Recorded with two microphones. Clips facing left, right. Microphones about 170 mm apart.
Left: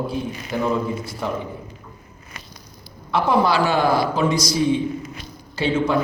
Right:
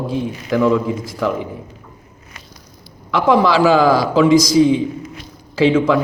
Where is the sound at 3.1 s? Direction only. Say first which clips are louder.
Right 4 dB; 90° right.